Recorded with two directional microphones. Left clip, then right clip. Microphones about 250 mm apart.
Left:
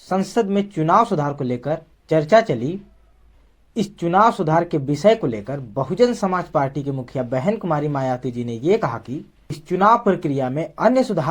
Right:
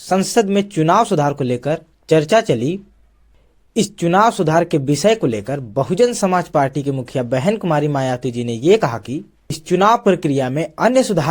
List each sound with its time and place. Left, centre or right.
0.1 s speech: right
3.8 s speech: right